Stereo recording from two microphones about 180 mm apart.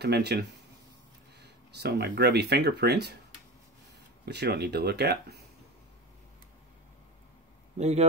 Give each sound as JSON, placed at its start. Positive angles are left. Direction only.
{"t": 0.0, "sound": "speech", "side_deg": -65}
{"t": 4.3, "sound": "speech", "side_deg": -65}
{"t": 7.7, "sound": "speech", "side_deg": -40}